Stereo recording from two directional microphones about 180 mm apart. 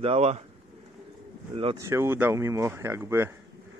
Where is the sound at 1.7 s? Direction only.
15° right (ahead or behind).